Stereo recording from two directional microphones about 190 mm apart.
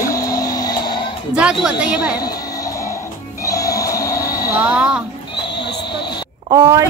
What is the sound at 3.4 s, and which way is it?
Music, 15° left (ahead or behind).